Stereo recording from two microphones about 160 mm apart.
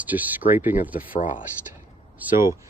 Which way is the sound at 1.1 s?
55° left (ahead or behind).